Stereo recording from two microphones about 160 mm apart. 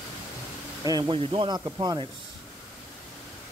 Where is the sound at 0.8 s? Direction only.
25° right (ahead or behind).